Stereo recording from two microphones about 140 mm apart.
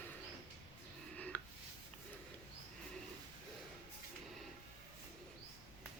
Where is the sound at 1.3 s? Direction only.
10° left (ahead or behind).